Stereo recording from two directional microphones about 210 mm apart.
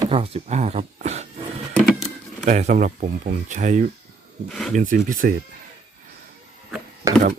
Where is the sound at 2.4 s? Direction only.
35° right (ahead or behind).